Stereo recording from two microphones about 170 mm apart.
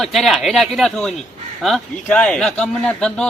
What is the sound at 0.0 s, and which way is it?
A man's voice, centre (ahead or behind).